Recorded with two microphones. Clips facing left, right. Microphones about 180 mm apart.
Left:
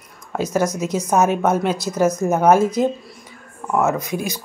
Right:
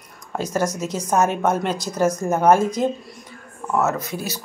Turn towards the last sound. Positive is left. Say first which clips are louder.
# left 4 dB
turn(degrees=15)  # may be behind; listen again after turning